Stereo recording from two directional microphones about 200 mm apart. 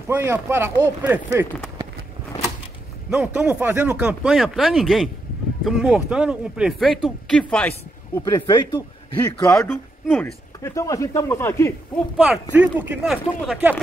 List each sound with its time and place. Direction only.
0.1 s speech: 10° right (ahead or behind)
3.3 s speech: 5° right (ahead or behind)
8.2 s speech: 20° left (ahead or behind)
12.5 s speech: 10° right (ahead or behind)